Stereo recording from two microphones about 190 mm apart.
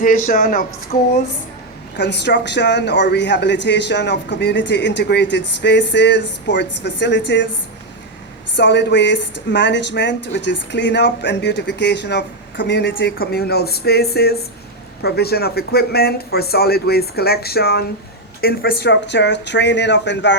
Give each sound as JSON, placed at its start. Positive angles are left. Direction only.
{"t": 0.3, "sound": "speech", "side_deg": 50}
{"t": 2.0, "sound": "speech", "side_deg": 65}
{"t": 8.5, "sound": "speech", "side_deg": 65}
{"t": 13.1, "sound": "speech", "side_deg": 55}